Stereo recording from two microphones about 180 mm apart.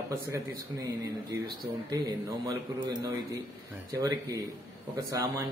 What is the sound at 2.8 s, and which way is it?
Speech, 25° right (ahead or behind).